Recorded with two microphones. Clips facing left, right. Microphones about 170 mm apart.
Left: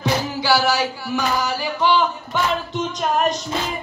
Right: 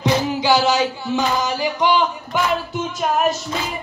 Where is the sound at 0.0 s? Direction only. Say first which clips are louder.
Right 3 dB; 20° right (ahead or behind).